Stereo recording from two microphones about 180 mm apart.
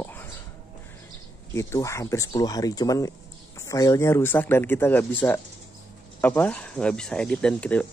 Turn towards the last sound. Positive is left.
turn(degrees=5)  # may be behind; listen again after turning